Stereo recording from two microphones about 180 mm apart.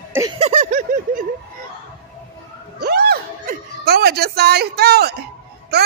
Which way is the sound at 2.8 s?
60° right (ahead or behind).